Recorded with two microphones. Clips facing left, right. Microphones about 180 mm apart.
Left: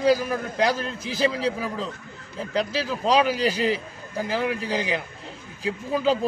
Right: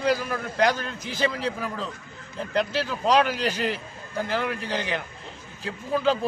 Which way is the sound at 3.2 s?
10° left (ahead or behind).